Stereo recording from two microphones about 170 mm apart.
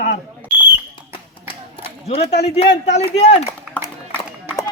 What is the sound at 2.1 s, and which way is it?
Speech, 35° left (ahead or behind).